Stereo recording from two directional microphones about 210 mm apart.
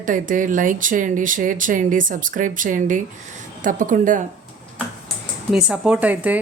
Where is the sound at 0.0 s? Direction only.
40° right (ahead or behind).